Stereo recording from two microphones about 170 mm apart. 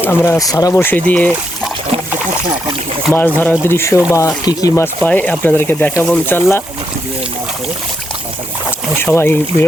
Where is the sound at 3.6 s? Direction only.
15° left (ahead or behind).